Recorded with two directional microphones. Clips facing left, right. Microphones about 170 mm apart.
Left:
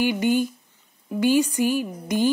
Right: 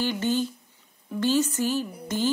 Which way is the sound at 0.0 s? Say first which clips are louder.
Left 4 dB; 15° left (ahead or behind).